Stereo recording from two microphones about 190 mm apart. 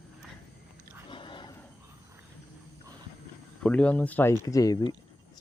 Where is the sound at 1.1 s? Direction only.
25° left (ahead or behind).